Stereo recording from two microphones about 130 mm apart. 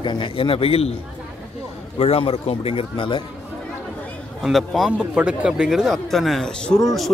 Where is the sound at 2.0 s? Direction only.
50° left (ahead or behind).